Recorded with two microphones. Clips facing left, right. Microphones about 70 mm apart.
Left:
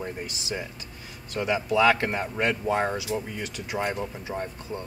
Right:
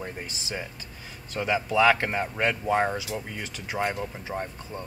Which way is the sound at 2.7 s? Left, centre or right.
Right.